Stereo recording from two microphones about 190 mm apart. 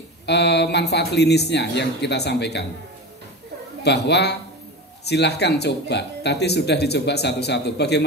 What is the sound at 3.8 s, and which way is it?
A man's voice, 60° left (ahead or behind).